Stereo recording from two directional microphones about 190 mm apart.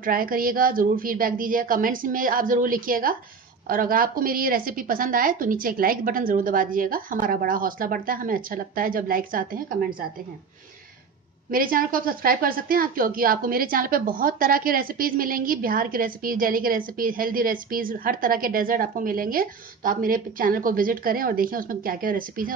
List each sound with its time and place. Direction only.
0.0 s a woman's voice: 50° right (ahead or behind)
11.5 s a woman's voice: 50° right (ahead or behind)